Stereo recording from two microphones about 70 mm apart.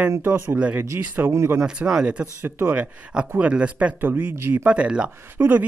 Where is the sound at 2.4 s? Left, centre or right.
Right.